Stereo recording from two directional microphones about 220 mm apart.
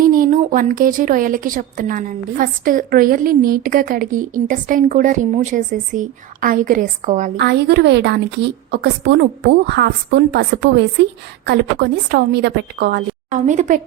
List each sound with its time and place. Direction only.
0.0 s a woman's voice: 40° right (ahead or behind)
7.3 s a woman's voice: 50° right (ahead or behind)
13.3 s a woman's voice: 35° right (ahead or behind)